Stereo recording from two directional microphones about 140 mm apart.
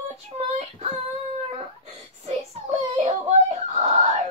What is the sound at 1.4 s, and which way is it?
Whimper, 50° right (ahead or behind).